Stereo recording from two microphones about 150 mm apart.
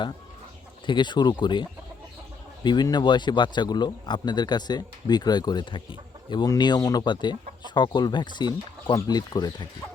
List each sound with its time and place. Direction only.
0.9 s speech: 30° left (ahead or behind)
2.6 s speech: 30° left (ahead or behind)